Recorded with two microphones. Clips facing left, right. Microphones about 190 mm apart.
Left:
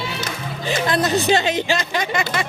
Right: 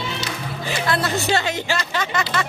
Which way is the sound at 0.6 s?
20° left (ahead or behind).